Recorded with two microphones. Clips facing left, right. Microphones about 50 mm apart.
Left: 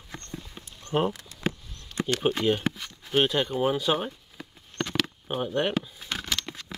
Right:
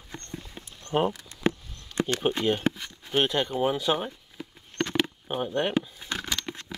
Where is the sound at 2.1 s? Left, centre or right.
Centre.